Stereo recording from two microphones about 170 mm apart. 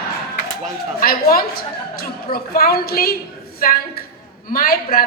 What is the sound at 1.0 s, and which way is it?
A woman's voice, 60° left (ahead or behind).